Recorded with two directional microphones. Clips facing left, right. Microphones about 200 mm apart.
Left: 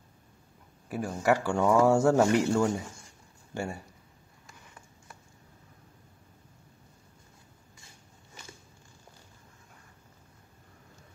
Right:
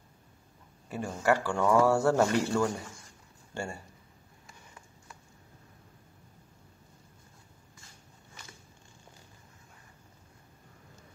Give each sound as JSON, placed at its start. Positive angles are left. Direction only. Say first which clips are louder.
{"t": 0.8, "sound": "speech", "louder": "left 1 dB", "side_deg": 10}